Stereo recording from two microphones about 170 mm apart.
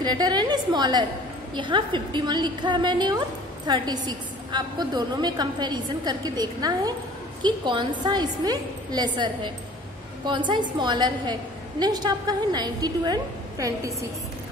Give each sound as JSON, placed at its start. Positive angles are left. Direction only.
{"t": 0.0, "sound": "a woman's voice", "side_deg": -25}